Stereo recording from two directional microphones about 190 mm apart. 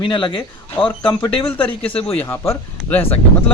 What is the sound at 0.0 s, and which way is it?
Speech, 25° left (ahead or behind).